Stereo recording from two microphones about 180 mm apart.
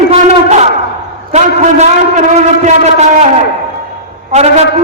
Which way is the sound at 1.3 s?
40° right (ahead or behind).